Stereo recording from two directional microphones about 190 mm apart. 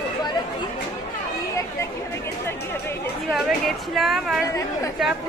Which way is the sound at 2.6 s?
15° left (ahead or behind).